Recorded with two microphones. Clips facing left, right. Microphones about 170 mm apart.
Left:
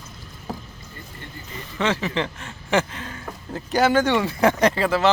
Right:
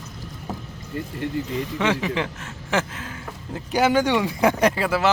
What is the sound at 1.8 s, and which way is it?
A man's voice, 15° right (ahead or behind).